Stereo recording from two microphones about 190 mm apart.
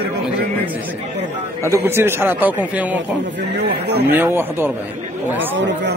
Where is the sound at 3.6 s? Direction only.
60° right (ahead or behind).